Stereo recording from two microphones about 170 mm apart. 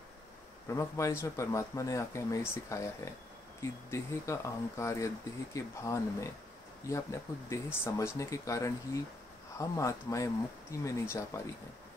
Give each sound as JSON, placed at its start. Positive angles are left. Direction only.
{"t": 0.7, "sound": "speech", "side_deg": 20}